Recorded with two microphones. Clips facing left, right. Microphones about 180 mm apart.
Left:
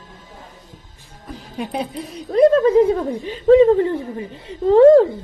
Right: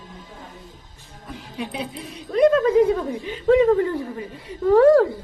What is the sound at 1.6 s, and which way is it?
A woman's voice, 45° left (ahead or behind).